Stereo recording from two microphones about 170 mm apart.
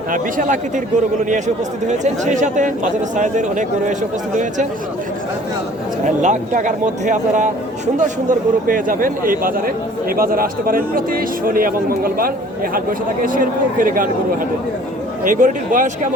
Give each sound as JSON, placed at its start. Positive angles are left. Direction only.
{"t": 0.1, "sound": "speech", "side_deg": -50}
{"t": 1.9, "sound": "speech", "side_deg": -45}
{"t": 6.1, "sound": "a man's voice", "side_deg": -45}
{"t": 15.2, "sound": "speech", "side_deg": -50}